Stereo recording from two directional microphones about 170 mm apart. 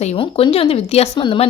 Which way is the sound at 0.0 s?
40° left (ahead or behind).